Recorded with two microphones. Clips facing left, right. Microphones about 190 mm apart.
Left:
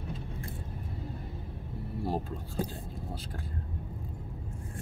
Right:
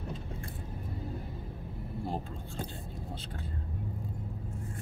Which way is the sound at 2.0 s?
5° left (ahead or behind).